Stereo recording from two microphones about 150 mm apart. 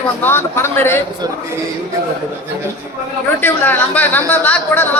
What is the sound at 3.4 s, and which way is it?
A woman's voice, 10° left (ahead or behind).